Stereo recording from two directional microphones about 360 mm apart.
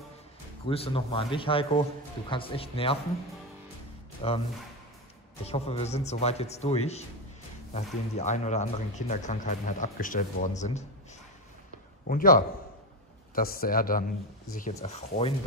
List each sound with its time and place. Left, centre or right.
0.7 s a man's voice: centre
4.2 s a man's voice: centre
5.4 s a man's voice: centre
12.1 s a man's voice: left